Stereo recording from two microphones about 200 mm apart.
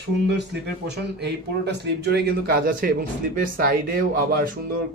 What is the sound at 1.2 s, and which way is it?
Speech, 55° right (ahead or behind).